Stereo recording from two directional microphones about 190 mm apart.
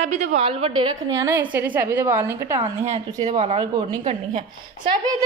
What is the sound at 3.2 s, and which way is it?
Speech, 40° right (ahead or behind).